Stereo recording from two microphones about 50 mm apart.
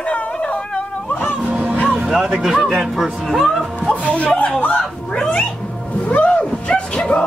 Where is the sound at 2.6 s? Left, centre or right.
Centre.